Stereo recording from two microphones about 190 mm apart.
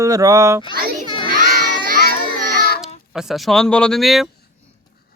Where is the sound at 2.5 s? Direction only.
55° left (ahead or behind).